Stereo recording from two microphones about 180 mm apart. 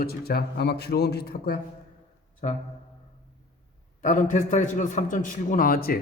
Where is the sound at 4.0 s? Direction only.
45° left (ahead or behind).